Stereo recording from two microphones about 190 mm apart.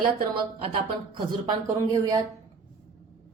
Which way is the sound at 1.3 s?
20° right (ahead or behind).